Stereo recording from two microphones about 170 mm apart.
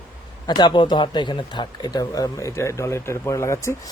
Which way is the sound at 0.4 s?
25° left (ahead or behind).